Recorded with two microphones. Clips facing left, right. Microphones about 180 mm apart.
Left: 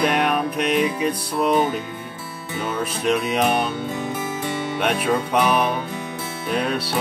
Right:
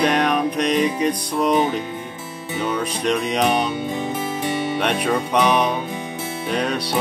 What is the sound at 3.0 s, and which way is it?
Music, 5° left (ahead or behind).